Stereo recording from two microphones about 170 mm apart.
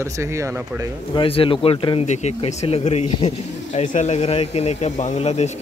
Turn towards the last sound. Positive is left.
turn(degrees=40)  # may be behind; listen again after turning